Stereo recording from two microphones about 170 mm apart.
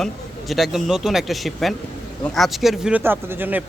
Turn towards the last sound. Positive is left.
turn(degrees=-10)  # may be behind; listen again after turning